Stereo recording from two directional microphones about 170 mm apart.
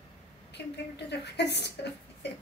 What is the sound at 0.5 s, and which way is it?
A woman's voice, 80° left.